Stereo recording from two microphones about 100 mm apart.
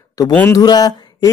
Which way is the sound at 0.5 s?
40° left (ahead or behind).